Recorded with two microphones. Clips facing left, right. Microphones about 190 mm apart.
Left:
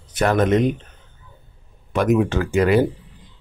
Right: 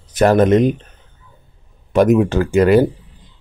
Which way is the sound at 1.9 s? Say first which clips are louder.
Right 5 dB; 40° right (ahead or behind).